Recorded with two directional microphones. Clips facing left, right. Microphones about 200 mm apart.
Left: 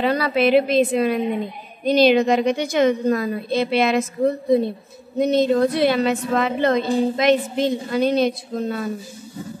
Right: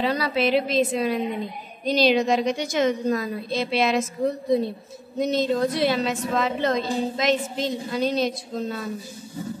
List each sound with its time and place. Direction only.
0.0 s a woman's voice: 55° left (ahead or behind)